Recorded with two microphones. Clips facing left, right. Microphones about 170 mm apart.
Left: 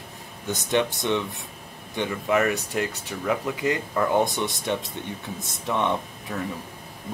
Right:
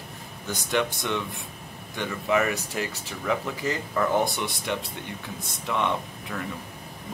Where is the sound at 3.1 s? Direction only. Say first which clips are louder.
Left 2 dB; 15° left (ahead or behind).